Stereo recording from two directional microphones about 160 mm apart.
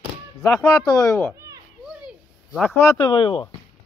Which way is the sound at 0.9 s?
20° left (ahead or behind).